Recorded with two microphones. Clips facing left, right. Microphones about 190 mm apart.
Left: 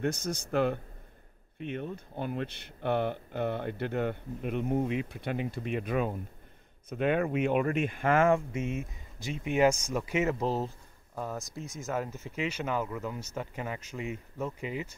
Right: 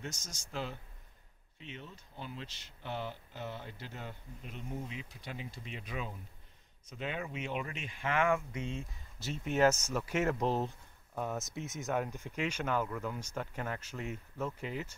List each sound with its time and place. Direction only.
0.0 s speech: 60° left (ahead or behind); by 8.5 s 40° left (ahead or behind)
8.5 s speech: 20° left (ahead or behind)